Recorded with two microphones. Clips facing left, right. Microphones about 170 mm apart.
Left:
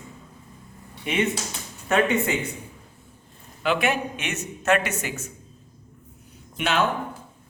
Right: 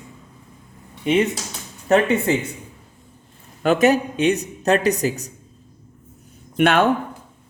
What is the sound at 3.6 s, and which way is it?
A woman's voice, 45° right (ahead or behind).